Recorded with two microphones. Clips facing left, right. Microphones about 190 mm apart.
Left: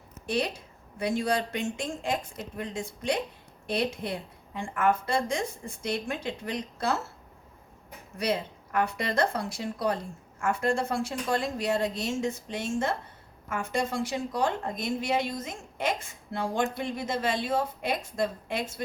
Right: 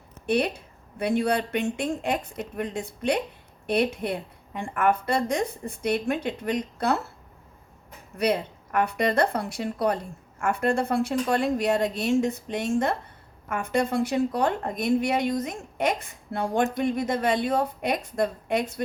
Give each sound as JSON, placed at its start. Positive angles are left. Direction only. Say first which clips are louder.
{"t": 0.3, "sound": "a woman's voice", "louder": "right 5 dB", "side_deg": -60}
{"t": 8.2, "sound": "a woman's voice", "louder": "right 4 dB", "side_deg": -60}